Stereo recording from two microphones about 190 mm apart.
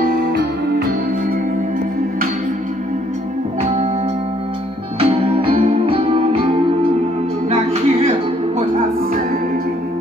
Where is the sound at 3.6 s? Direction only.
30° right (ahead or behind).